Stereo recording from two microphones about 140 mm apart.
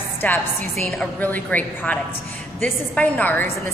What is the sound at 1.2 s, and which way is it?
A woman's voice, 10° left (ahead or behind).